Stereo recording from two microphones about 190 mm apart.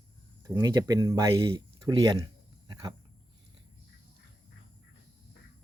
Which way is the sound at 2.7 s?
20° right (ahead or behind).